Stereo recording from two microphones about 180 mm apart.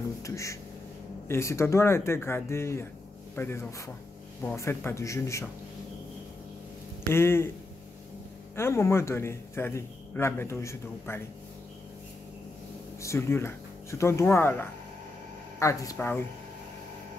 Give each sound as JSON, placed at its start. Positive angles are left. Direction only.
{"t": 0.2, "sound": "speech", "side_deg": 15}
{"t": 7.1, "sound": "speech", "side_deg": 15}
{"t": 8.5, "sound": "speech", "side_deg": 15}
{"t": 13.0, "sound": "speech", "side_deg": 15}